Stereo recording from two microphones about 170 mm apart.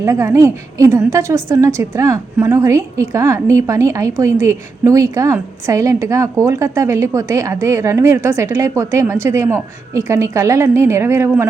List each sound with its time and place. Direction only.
0.0 s a woman's voice: 15° right (ahead or behind)